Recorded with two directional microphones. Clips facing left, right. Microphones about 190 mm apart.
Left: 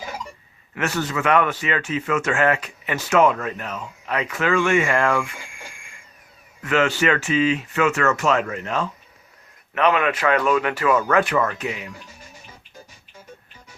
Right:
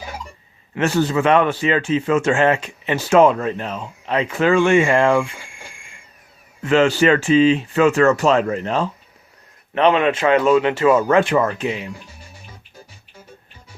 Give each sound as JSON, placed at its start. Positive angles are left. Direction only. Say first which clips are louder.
{"t": 0.8, "sound": "a man's voice", "louder": "right 7 dB", "side_deg": -30}
{"t": 6.6, "sound": "a man's voice", "louder": "right 5 dB", "side_deg": -30}